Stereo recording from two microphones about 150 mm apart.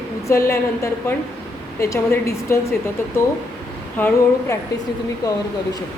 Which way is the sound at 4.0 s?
15° left (ahead or behind).